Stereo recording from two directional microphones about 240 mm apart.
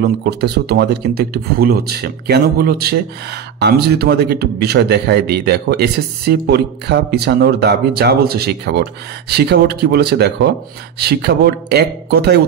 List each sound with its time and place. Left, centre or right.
0.0 s a man's voice: right